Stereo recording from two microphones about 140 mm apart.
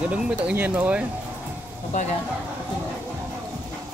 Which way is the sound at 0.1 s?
10° right (ahead or behind).